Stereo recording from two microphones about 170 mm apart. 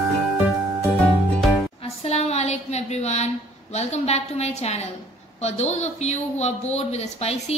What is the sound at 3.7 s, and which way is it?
Speech, 40° left (ahead or behind).